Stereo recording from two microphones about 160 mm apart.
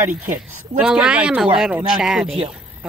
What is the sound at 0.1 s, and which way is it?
Speech, 55° right (ahead or behind).